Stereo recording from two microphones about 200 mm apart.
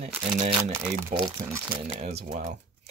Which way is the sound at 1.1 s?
35° right (ahead or behind).